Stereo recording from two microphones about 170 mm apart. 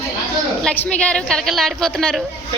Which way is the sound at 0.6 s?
5° left (ahead or behind).